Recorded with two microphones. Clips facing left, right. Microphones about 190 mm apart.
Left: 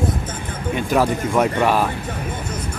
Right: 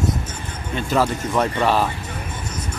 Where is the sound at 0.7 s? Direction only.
15° left (ahead or behind).